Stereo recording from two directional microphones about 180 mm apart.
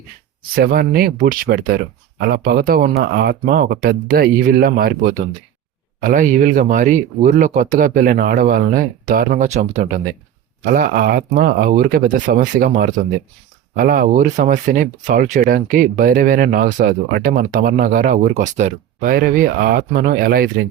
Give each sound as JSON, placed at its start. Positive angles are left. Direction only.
{"t": 0.5, "sound": "speech", "side_deg": -55}
{"t": 16.8, "sound": "speech", "side_deg": -60}
{"t": 19.0, "sound": "speech", "side_deg": -55}